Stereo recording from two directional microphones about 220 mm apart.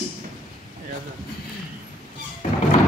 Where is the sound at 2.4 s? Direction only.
35° left (ahead or behind).